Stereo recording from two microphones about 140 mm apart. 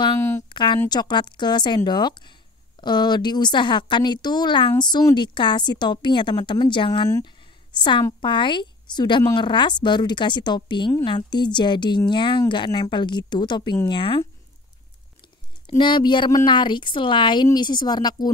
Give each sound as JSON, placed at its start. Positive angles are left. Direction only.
{"t": 0.5, "sound": "a sound", "side_deg": 35}
{"t": 0.8, "sound": "a woman's voice", "side_deg": 30}
{"t": 15.8, "sound": "a woman's voice", "side_deg": 35}